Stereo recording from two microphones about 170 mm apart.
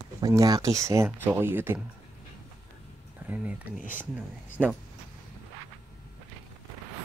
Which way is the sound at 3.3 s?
10° right (ahead or behind).